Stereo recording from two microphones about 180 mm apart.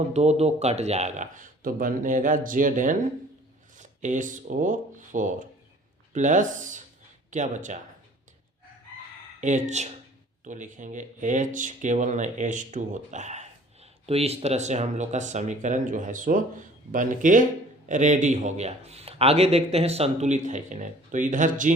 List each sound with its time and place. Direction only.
0.1 s speech: 35° right (ahead or behind)
9.4 s a man's voice: 40° right (ahead or behind)